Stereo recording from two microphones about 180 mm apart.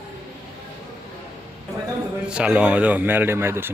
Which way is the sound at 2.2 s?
5° right (ahead or behind).